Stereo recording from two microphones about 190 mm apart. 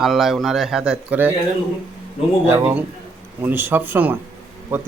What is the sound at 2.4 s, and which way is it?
A man's voice, 15° right (ahead or behind).